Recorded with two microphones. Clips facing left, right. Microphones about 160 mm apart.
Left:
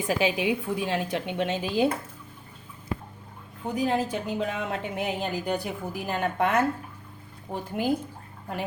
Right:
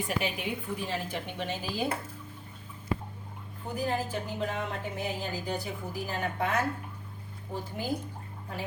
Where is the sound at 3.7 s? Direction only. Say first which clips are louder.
Left 5 dB; 85° left.